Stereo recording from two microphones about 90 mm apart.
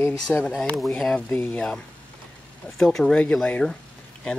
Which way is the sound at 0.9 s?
5° left (ahead or behind).